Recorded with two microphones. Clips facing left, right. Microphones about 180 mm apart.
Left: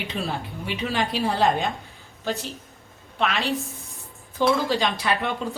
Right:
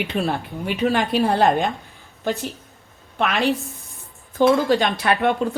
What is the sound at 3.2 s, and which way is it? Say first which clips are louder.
Speech: right 5 dB; 55° right (ahead or behind).